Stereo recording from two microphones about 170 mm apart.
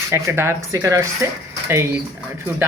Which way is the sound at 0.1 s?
15° right (ahead or behind).